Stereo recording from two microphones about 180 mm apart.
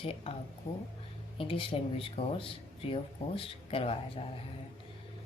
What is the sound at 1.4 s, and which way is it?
Speech, 30° left (ahead or behind).